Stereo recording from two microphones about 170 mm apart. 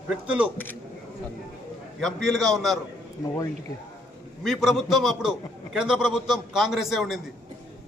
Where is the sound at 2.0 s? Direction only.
5° left (ahead or behind).